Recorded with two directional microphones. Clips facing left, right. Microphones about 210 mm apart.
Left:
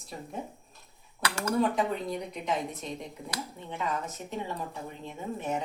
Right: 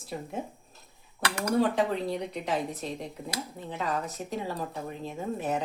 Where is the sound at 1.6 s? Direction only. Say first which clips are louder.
Right 1 dB; 30° right (ahead or behind).